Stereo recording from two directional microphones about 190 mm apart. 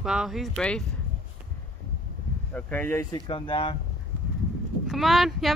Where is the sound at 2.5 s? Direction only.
10° left (ahead or behind); by 3.7 s 30° left (ahead or behind).